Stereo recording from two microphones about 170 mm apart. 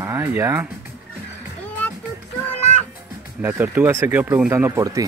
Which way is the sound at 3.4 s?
10° right (ahead or behind).